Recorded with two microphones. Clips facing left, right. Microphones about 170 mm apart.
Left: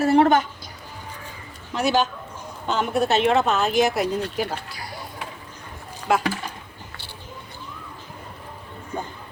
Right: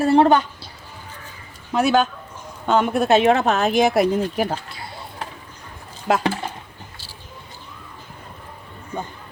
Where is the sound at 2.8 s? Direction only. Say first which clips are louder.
Right 4 dB; 55° right (ahead or behind).